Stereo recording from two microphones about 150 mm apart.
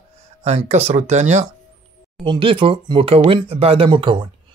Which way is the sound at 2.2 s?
35° right (ahead or behind).